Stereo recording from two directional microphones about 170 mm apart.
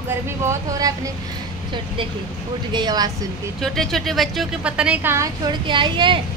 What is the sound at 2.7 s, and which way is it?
Speech, 25° right (ahead or behind).